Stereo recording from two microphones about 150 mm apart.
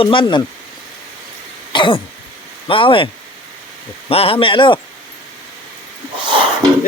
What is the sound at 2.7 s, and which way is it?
Speech, 35° left (ahead or behind).